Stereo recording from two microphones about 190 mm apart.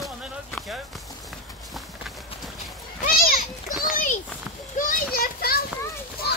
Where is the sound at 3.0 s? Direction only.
45° left (ahead or behind).